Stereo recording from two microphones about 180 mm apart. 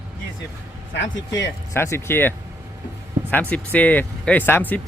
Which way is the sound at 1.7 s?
15° left (ahead or behind).